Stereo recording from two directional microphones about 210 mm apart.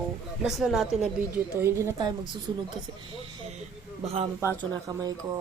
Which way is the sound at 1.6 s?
10° right (ahead or behind).